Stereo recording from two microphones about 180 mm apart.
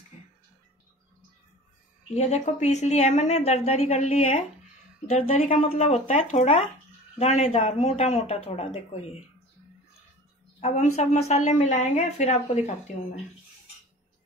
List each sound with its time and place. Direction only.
2.1 s a woman's voice: 40° left (ahead or behind)
10.6 s a woman's voice: 40° left (ahead or behind)